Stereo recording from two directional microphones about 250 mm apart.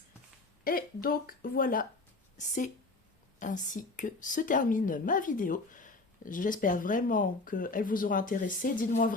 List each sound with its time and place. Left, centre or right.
0.6 s a woman's voice: left
3.4 s speech: left